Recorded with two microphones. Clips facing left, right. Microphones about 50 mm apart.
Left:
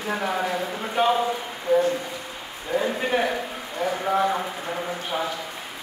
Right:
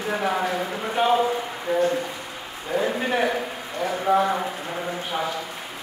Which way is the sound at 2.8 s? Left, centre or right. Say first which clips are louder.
Right 1 dB; centre.